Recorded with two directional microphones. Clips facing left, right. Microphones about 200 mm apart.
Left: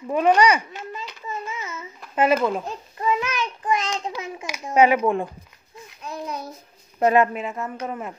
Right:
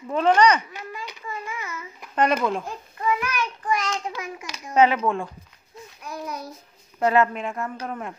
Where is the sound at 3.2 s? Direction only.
20° left (ahead or behind).